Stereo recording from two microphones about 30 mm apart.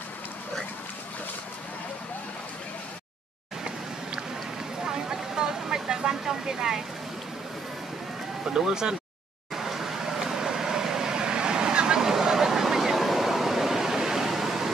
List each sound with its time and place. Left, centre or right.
4.8 s vehicle: centre
8.5 s speech: right
9.6 s vehicle: centre